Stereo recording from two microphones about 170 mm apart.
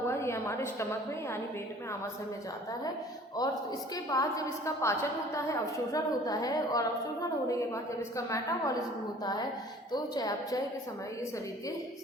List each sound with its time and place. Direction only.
0.1 s a woman's voice: 15° left (ahead or behind)
3.4 s a woman's voice: 25° left (ahead or behind)